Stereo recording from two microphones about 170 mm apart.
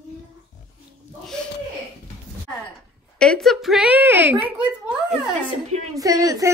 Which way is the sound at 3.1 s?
5° left (ahead or behind).